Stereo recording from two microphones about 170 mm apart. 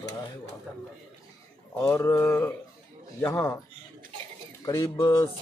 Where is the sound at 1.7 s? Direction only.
15° left (ahead or behind).